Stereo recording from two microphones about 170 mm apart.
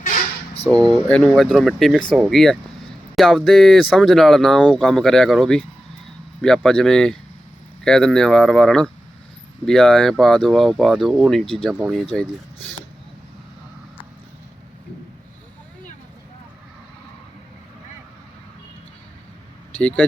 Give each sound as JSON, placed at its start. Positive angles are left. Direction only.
{"t": 0.7, "sound": "speech", "side_deg": -20}
{"t": 1.0, "sound": "speech", "side_deg": 5}